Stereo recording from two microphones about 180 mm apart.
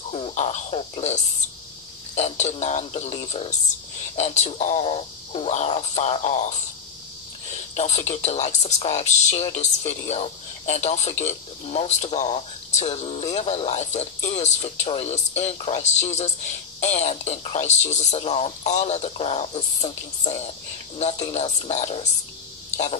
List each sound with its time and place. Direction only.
0.1 s speech: 35° left (ahead or behind)
7.7 s speech: 40° left (ahead or behind)